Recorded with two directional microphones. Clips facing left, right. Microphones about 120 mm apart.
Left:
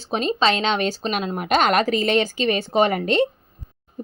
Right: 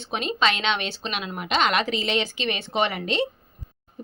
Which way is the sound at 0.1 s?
35° left (ahead or behind).